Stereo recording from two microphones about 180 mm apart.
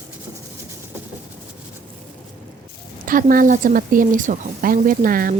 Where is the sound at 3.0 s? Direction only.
50° right (ahead or behind).